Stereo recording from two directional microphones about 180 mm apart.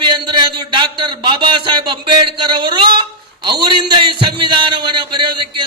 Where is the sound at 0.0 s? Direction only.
25° right (ahead or behind).